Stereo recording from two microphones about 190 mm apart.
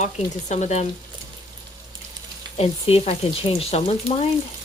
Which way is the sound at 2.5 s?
30° left (ahead or behind).